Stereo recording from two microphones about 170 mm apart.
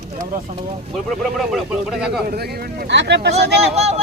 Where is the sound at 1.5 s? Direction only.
5° right (ahead or behind).